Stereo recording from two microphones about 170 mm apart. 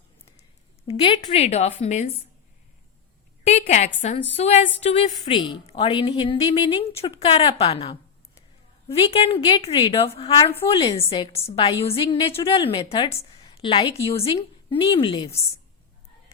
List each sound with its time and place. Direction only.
0.9 s a woman's voice: 30° left (ahead or behind)
3.4 s a woman's voice: 40° left (ahead or behind)